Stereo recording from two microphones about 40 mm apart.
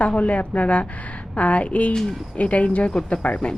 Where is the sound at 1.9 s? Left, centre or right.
Centre.